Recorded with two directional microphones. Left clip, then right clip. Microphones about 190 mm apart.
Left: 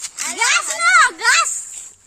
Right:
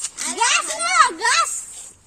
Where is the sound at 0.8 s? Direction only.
25° right (ahead or behind).